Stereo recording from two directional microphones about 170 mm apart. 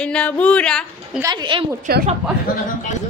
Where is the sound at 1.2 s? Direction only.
30° right (ahead or behind).